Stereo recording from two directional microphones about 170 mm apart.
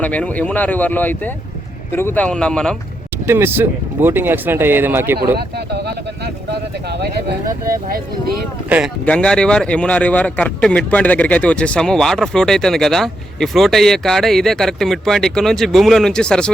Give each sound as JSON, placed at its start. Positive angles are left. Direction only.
{"t": 0.0, "sound": "speech", "side_deg": 10}
{"t": 3.2, "sound": "speech", "side_deg": -15}
{"t": 5.4, "sound": "a sound", "side_deg": -75}
{"t": 7.0, "sound": "speech", "side_deg": -65}
{"t": 9.0, "sound": "speech", "side_deg": 5}